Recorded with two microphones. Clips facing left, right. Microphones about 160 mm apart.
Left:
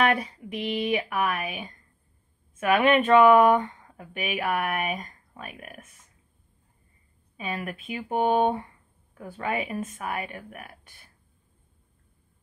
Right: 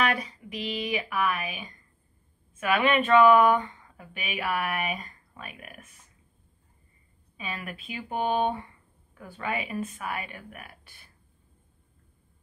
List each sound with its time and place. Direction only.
0.0 s speech: 55° left (ahead or behind)
7.3 s speech: 50° left (ahead or behind)
9.2 s speech: 40° left (ahead or behind)